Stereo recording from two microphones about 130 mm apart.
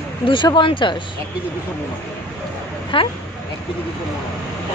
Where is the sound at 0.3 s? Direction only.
40° left (ahead or behind).